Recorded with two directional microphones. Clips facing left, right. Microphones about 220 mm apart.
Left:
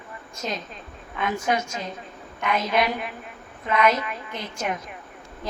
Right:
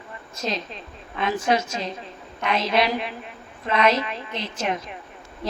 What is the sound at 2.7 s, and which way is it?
A woman's voice, 30° right (ahead or behind).